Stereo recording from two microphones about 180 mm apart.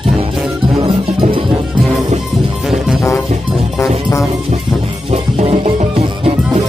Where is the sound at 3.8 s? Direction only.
15° left (ahead or behind).